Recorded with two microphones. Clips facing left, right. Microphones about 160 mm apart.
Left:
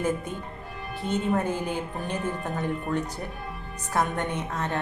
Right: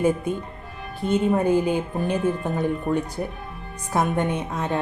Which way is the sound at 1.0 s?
15° right (ahead or behind).